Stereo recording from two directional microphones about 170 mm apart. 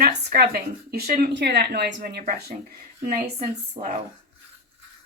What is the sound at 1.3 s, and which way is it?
Speech, 85° right.